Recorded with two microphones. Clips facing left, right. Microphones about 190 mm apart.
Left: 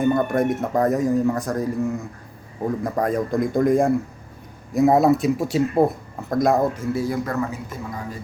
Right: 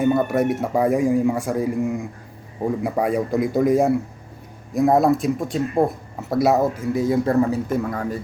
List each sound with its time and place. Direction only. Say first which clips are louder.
0.0 s speech: right 1 dB; 5° right (ahead or behind)
6.1 s speech: right 1 dB; 5° right (ahead or behind)
6.9 s a man's voice: right 5 dB; 20° right (ahead or behind)
7.7 s a man's voice: right 9 dB; 55° right (ahead or behind)